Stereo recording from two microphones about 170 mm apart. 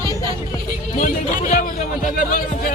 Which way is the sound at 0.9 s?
50° left (ahead or behind).